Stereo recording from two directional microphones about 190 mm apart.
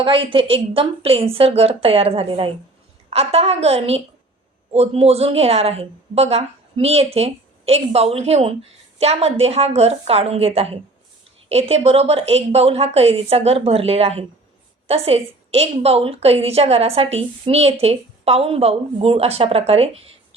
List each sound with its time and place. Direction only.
0.0 s a woman's voice: 30° right (ahead or behind)